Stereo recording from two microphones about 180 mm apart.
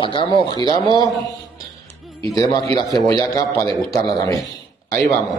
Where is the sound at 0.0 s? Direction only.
30° left (ahead or behind).